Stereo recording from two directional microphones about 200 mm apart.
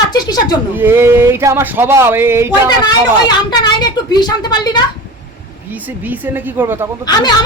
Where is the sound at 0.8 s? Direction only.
10° right (ahead or behind).